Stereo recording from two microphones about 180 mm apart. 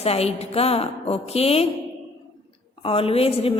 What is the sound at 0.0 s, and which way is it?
A woman's voice, 35° left (ahead or behind).